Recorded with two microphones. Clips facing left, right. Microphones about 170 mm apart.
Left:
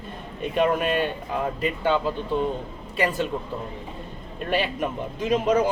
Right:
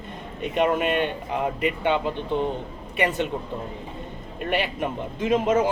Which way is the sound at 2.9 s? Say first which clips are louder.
Even; 20° right (ahead or behind).